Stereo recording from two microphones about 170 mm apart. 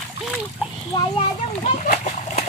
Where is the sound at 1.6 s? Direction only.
45° left (ahead or behind).